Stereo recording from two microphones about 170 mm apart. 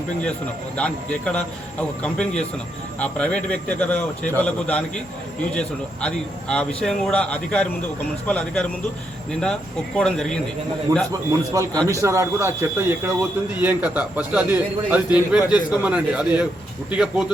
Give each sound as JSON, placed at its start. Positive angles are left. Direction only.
{"t": 0.8, "sound": "speech", "side_deg": 5}
{"t": 10.9, "sound": "a man's voice", "side_deg": -20}